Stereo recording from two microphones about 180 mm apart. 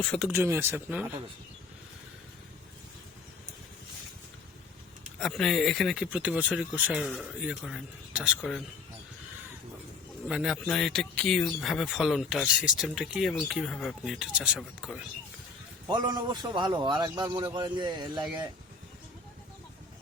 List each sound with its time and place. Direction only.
0.0 s speech: 5° left (ahead or behind)
0.3 s speech: 15° right (ahead or behind)
5.2 s speech: centre (ahead or behind)
10.2 s speech: 5° right (ahead or behind)
15.9 s speech: 20° right (ahead or behind)